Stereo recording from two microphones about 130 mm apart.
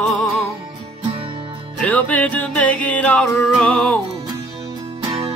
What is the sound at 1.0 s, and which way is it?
Music, 40° right (ahead or behind).